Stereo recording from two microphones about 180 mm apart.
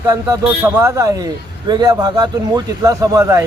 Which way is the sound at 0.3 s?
15° right (ahead or behind).